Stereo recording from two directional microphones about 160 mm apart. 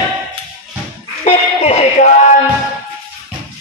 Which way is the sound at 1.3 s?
45° left (ahead or behind).